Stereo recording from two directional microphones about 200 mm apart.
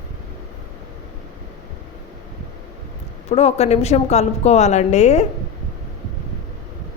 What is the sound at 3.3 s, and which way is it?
A woman's voice, 30° left (ahead or behind).